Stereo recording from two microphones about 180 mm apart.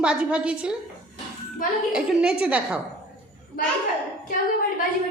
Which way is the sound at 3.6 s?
55° left (ahead or behind).